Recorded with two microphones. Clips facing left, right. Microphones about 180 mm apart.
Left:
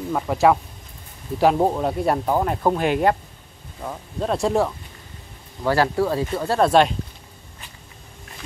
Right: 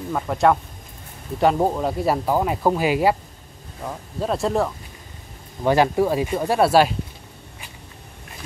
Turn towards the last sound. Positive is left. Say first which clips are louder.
# even
turn(degrees=-5)  # may be behind; listen again after turning